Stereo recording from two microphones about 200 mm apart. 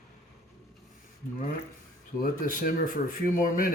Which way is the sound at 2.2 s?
45° left (ahead or behind).